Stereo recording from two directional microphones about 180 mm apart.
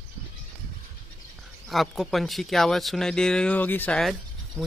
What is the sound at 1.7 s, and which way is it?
Speech, centre (ahead or behind).